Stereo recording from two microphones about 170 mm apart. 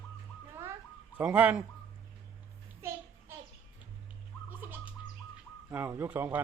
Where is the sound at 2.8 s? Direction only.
15° right (ahead or behind).